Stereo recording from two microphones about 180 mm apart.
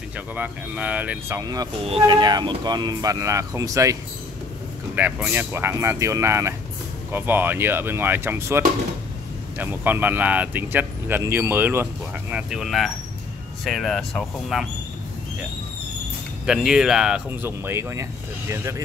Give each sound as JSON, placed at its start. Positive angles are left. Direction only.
{"t": 0.4, "sound": "speech", "side_deg": -10}
{"t": 1.8, "sound": "speech", "side_deg": -30}
{"t": 16.4, "sound": "speech", "side_deg": -5}